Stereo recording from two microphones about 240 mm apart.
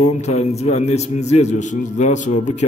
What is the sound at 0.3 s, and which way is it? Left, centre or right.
A man's voice, left.